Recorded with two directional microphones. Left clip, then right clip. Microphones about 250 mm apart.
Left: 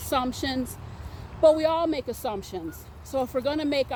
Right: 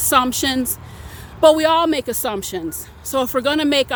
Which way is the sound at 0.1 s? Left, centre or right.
Right.